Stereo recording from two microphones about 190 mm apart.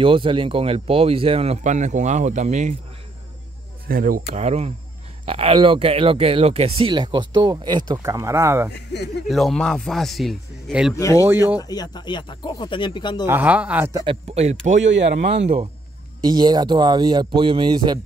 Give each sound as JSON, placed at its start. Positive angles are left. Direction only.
{"t": 0.0, "sound": "speech", "side_deg": -25}
{"t": 3.8, "sound": "speech", "side_deg": -50}
{"t": 4.3, "sound": "speech", "side_deg": -35}
{"t": 9.3, "sound": "speech", "side_deg": 0}
{"t": 11.0, "sound": "speech", "side_deg": 15}
{"t": 13.3, "sound": "speech", "side_deg": -10}
{"t": 14.0, "sound": "speech", "side_deg": -35}
{"t": 14.8, "sound": "speech", "side_deg": -70}
{"t": 15.4, "sound": "speech", "side_deg": -35}
{"t": 16.3, "sound": "speech", "side_deg": -20}